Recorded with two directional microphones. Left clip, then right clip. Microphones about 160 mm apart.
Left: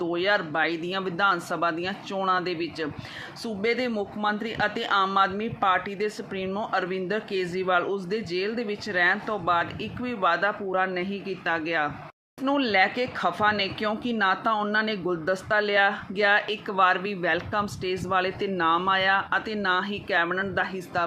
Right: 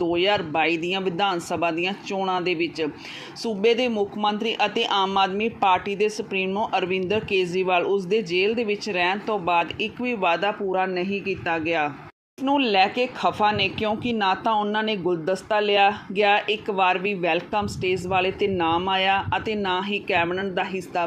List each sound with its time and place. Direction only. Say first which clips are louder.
0.0 s speech: right 3 dB; 10° right (ahead or behind)
11.0 s speech: right 6 dB; 35° left (ahead or behind)
11.4 s speech: right 1 dB; 10° right (ahead or behind)